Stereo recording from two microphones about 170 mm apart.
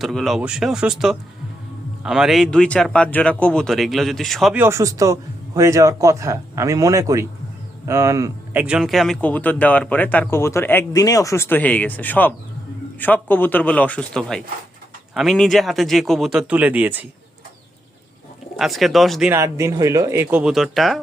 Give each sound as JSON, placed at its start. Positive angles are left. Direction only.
{"t": 0.0, "sound": "speech", "side_deg": 0}
{"t": 4.5, "sound": "speech", "side_deg": -15}
{"t": 8.6, "sound": "speech", "side_deg": -5}
{"t": 18.5, "sound": "speech", "side_deg": 0}
{"t": 19.3, "sound": "speech", "side_deg": -15}